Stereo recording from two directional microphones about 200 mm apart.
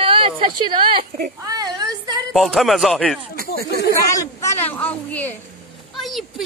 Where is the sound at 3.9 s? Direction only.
15° left (ahead or behind).